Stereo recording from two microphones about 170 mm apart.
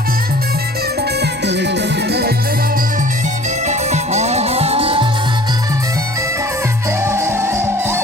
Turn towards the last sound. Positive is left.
turn(degrees=-15)  # may be behind; listen again after turning